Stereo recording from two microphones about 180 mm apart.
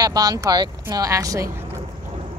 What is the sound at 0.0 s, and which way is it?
Speech, 20° right (ahead or behind).